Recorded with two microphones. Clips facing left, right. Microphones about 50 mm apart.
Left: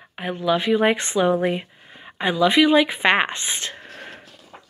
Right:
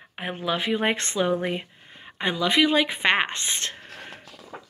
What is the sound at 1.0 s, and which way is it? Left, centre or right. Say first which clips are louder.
Speech: left 5 dB; centre.